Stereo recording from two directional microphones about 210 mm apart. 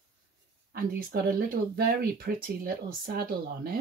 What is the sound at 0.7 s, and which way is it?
Speech, 45° right (ahead or behind).